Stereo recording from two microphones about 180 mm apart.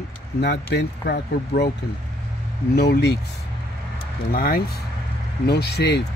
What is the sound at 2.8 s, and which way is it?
Speech, 65° left (ahead or behind).